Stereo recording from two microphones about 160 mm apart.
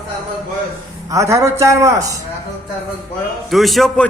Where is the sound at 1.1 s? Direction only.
20° right (ahead or behind).